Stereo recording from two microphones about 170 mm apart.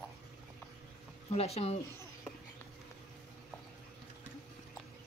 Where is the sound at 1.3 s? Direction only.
35° left (ahead or behind).